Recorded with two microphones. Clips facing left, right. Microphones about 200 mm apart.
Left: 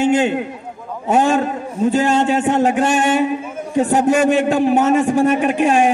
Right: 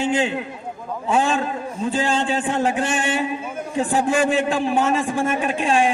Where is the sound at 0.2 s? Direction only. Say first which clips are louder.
Left 5 dB; 50° left (ahead or behind).